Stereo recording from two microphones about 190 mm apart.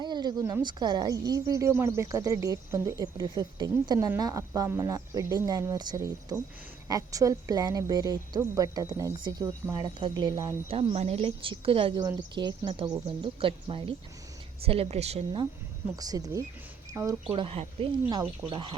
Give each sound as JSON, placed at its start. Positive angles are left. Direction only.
{"t": 0.0, "sound": "a woman's voice", "side_deg": -20}
{"t": 16.0, "sound": "a woman's voice", "side_deg": -20}
{"t": 17.3, "sound": "a woman's voice", "side_deg": -30}